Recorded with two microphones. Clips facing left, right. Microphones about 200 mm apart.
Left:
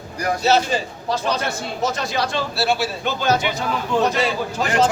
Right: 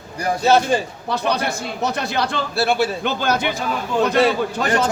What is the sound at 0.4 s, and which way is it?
A man's voice, 55° right (ahead or behind).